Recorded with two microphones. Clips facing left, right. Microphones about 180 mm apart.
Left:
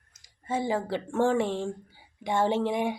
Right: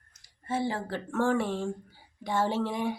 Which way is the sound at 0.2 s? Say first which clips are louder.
Left 1 dB; 15° left (ahead or behind).